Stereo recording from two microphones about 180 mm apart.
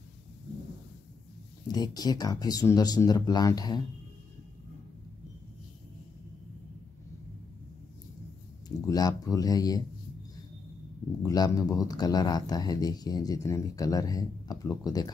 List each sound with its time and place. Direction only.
1.7 s speech: 20° left (ahead or behind)
8.6 s speech: 20° left (ahead or behind)
11.2 s speech: 20° left (ahead or behind)